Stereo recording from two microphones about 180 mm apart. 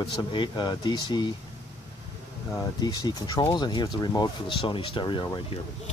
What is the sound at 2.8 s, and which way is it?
Speech, 25° left (ahead or behind).